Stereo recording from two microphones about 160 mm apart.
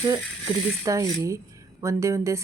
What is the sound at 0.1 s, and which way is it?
Speech, 20° right (ahead or behind).